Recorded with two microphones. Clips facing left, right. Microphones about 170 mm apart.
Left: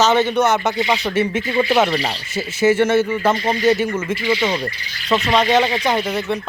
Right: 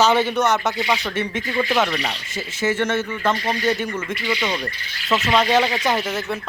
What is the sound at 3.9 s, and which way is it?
Speech, 25° left (ahead or behind).